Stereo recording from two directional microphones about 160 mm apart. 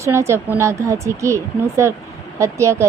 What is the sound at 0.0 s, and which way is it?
A woman's voice, 15° right (ahead or behind).